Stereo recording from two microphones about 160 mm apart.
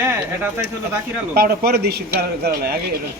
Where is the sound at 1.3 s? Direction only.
75° right (ahead or behind).